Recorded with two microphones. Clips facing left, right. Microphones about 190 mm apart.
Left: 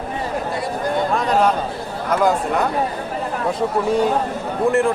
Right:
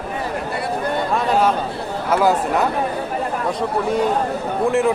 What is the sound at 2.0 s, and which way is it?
Speech, 5° right (ahead or behind).